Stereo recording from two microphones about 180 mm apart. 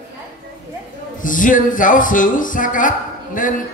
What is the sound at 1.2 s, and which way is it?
A man's voice, 45° left (ahead or behind).